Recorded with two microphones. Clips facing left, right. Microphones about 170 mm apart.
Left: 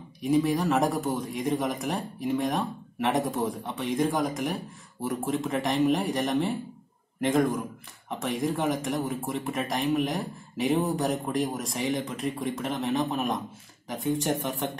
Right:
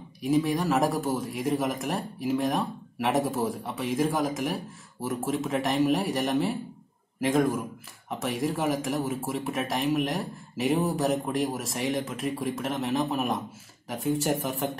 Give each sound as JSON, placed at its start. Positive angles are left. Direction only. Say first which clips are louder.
{"t": 0.2, "sound": "speech", "louder": "left 1 dB", "side_deg": 0}